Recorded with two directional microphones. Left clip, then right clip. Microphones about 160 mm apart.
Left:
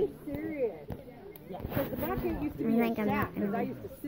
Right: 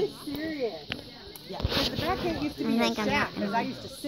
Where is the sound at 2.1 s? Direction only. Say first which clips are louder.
Right 5 dB; 5° right (ahead or behind).